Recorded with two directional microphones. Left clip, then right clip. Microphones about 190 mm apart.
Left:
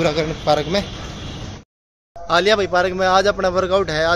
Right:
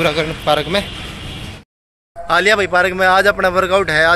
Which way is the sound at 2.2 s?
Centre (ahead or behind).